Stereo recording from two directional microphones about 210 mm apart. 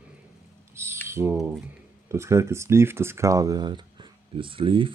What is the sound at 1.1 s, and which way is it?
Typing, 10° right (ahead or behind).